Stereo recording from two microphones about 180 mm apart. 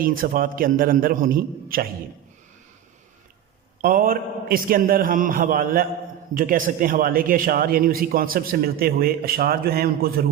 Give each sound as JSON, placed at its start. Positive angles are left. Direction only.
{"t": 0.0, "sound": "a man's voice", "side_deg": -50}
{"t": 3.8, "sound": "a man's voice", "side_deg": -50}